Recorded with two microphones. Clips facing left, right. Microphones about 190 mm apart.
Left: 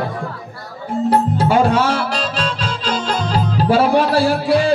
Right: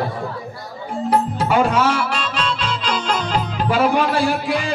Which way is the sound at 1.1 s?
35° left (ahead or behind).